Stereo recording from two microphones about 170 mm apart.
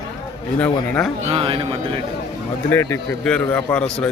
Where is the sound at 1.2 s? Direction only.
35° right (ahead or behind).